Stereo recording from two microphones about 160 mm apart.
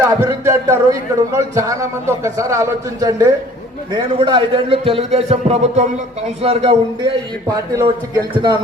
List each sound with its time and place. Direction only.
0.2 s a man's voice: 20° right (ahead or behind); by 6.7 s 35° right (ahead or behind)
7.9 s a man's voice: 30° right (ahead or behind)